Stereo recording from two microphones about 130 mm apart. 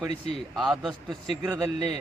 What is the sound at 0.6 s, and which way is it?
Speech, centre (ahead or behind).